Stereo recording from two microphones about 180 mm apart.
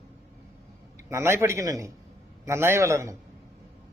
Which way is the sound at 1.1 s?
15° right (ahead or behind).